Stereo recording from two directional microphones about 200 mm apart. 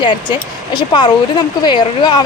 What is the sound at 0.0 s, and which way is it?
Speech, 20° left (ahead or behind).